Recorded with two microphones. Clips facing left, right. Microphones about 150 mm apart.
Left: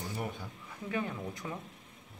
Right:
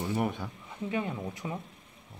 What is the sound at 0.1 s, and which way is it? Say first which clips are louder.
Speech: right 10 dB; 70° right (ahead or behind).